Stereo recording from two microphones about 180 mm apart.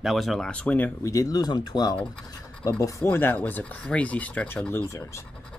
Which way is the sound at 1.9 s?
5° left (ahead or behind).